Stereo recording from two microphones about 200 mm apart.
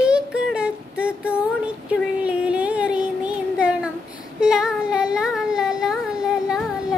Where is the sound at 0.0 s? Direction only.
5° right (ahead or behind).